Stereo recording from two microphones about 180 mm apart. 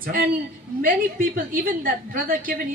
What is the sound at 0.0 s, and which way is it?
A woman's voice, 55° right (ahead or behind).